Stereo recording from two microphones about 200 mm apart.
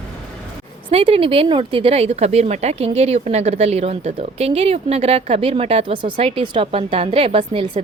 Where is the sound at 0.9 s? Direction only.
25° right (ahead or behind).